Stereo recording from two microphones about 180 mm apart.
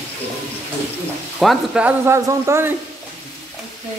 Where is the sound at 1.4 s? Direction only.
Centre (ahead or behind).